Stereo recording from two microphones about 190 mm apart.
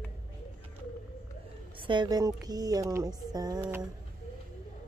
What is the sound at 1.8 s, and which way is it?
Speech, 25° right (ahead or behind).